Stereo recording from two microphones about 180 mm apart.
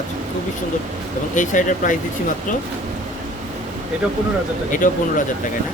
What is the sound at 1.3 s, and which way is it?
Speech, 45° left (ahead or behind).